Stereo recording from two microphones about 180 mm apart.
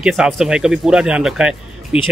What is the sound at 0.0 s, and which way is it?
Speech, centre (ahead or behind).